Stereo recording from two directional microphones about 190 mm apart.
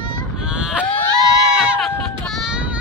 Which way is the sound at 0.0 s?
25° left (ahead or behind).